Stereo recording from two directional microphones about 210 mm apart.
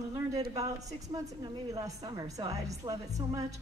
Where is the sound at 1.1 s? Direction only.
15° right (ahead or behind).